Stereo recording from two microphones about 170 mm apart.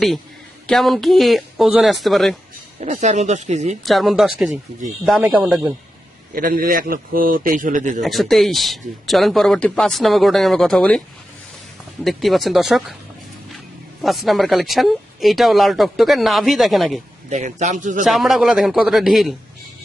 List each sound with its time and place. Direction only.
0.7 s speech: centre (ahead or behind)
2.8 s speech: 45° right (ahead or behind)
3.8 s speech: centre (ahead or behind)
6.3 s a man's voice: 60° right (ahead or behind)
8.0 s speech: centre (ahead or behind)
12.0 s speech: centre (ahead or behind)
14.0 s speech: centre (ahead or behind)
17.2 s speech: 45° right (ahead or behind)
18.0 s speech: centre (ahead or behind)